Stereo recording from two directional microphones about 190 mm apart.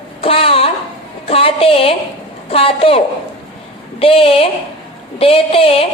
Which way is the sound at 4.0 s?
30° left (ahead or behind).